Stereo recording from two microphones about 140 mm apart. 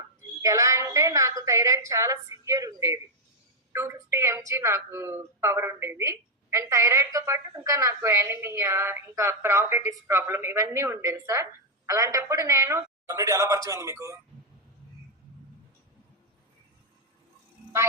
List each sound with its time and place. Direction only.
0.4 s a woman's voice: 20° right (ahead or behind)